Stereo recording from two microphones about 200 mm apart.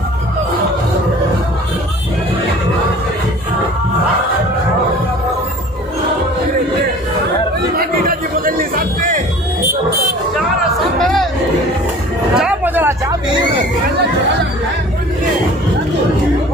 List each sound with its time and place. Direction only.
7.7 s chatter: 45° right (ahead or behind)
11.0 s music: centre (ahead or behind)
12.4 s hubbub: 5° right (ahead or behind)